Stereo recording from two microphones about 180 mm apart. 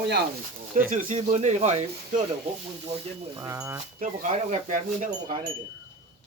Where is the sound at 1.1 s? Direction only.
40° right (ahead or behind).